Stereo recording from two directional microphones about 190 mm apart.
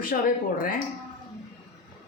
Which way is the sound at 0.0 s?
50° left (ahead or behind).